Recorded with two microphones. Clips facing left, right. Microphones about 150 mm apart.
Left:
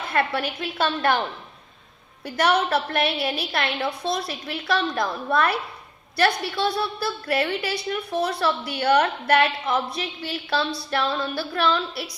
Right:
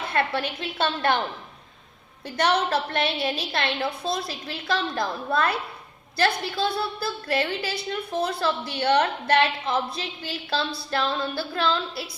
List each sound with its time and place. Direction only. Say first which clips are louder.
0.1 s a woman's voice: left 2 dB; 25° right (ahead or behind)
2.2 s a woman's voice: left 2 dB; 25° right (ahead or behind)